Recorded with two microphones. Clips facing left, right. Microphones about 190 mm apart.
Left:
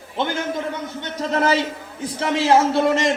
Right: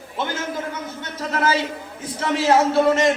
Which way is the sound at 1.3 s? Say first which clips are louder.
Left 2 dB; 25° left (ahead or behind).